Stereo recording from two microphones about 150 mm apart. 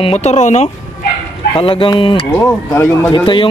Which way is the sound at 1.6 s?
35° left (ahead or behind).